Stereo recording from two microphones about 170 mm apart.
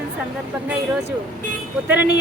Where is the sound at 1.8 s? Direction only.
10° right (ahead or behind).